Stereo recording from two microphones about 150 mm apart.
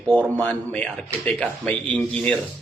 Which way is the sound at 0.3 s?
10° left (ahead or behind).